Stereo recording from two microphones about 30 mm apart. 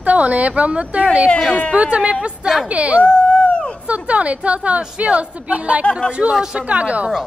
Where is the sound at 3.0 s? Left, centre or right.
Left.